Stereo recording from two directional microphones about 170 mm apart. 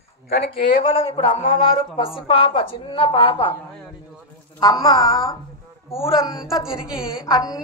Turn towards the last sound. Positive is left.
turn(degrees=20)  # may be behind; listen again after turning